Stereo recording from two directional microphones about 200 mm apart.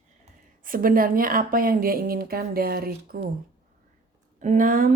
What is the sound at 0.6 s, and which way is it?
A woman's voice, 45° right (ahead or behind).